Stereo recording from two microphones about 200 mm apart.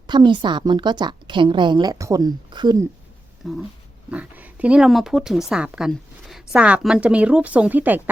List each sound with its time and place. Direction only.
0.1 s a woman's voice: 20° right (ahead or behind)
3.4 s a woman's voice: centre (ahead or behind)